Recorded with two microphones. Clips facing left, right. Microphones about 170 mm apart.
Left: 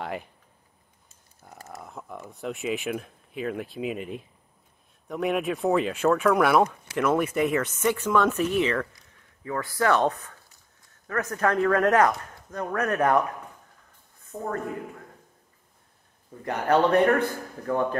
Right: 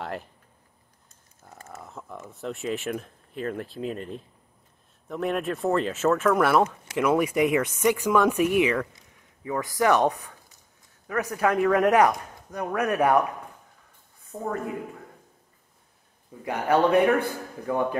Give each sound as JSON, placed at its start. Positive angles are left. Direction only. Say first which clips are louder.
{"t": 0.0, "sound": "speech", "louder": "left 1 dB", "side_deg": 5}
{"t": 1.4, "sound": "a sound", "louder": "left 1 dB", "side_deg": 5}
{"t": 2.3, "sound": "speech", "louder": "left 1 dB", "side_deg": 0}
{"t": 14.3, "sound": "speech", "louder": "right 1 dB", "side_deg": -10}
{"t": 16.4, "sound": "speech", "louder": "even", "side_deg": -10}